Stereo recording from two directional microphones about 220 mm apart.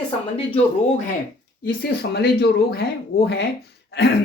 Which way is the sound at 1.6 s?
45° left (ahead or behind).